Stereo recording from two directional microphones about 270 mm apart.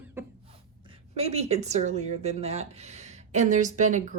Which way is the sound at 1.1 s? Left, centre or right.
Right.